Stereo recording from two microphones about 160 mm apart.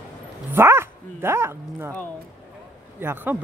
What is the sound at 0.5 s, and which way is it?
Speech, 15° right (ahead or behind).